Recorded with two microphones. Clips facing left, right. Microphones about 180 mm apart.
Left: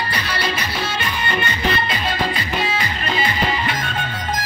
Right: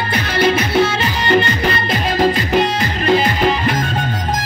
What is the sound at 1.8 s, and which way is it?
Music, 45° right (ahead or behind).